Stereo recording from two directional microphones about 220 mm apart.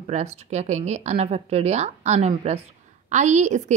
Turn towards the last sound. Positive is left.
turn(degrees=-35)  # may be behind; listen again after turning